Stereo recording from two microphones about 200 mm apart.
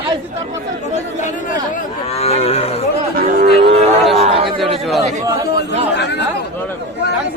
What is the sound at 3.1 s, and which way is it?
Cattle, 50° right (ahead or behind).